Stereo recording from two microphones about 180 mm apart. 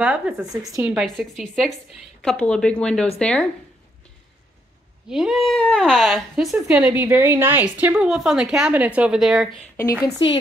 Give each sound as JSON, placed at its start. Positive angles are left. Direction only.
{"t": 0.0, "sound": "a woman's voice", "side_deg": -5}
{"t": 5.1, "sound": "a woman's voice", "side_deg": 0}
{"t": 10.0, "sound": "speech", "side_deg": 25}